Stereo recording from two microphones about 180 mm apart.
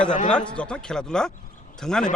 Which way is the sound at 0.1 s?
45° left (ahead or behind).